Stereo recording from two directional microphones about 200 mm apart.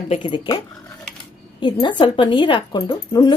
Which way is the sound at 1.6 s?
25° left (ahead or behind).